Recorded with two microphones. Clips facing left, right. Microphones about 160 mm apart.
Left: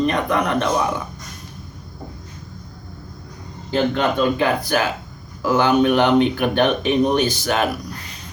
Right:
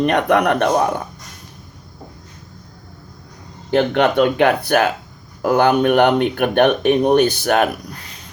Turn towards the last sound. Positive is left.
turn(degrees=-55)  # may be behind; listen again after turning